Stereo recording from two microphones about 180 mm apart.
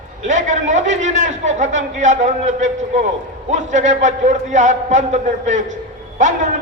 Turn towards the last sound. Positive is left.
turn(degrees=-40)  # may be behind; listen again after turning